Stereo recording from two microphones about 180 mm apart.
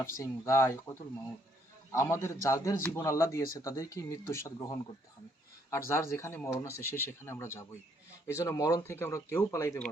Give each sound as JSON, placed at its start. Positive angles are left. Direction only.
{"t": 0.0, "sound": "speech", "side_deg": 15}
{"t": 5.9, "sound": "speech", "side_deg": 15}